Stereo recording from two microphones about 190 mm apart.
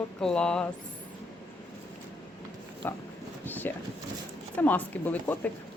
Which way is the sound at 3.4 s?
10° left (ahead or behind).